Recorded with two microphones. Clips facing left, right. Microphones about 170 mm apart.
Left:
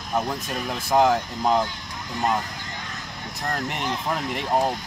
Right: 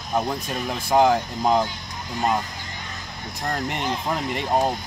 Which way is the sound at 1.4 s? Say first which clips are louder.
Right 1 dB; 10° right (ahead or behind).